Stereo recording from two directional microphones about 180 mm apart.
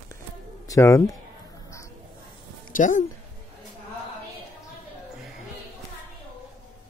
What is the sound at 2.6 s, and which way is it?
Speech, 45° left (ahead or behind).